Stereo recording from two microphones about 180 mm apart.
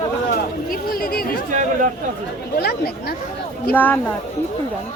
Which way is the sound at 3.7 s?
10° left (ahead or behind).